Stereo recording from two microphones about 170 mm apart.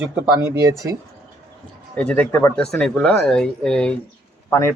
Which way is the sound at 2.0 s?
5° left (ahead or behind).